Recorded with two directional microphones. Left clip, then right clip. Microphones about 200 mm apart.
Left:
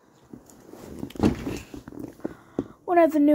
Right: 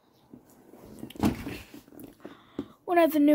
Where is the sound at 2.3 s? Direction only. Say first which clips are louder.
Left 8 dB; 25° right (ahead or behind).